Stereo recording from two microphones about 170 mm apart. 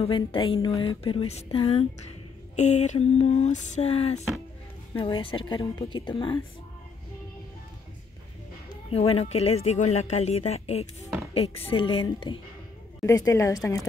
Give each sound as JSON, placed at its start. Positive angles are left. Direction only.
{"t": 0.0, "sound": "a woman's voice", "side_deg": 30}
{"t": 8.9, "sound": "speech", "side_deg": 35}
{"t": 13.0, "sound": "a woman's voice", "side_deg": 20}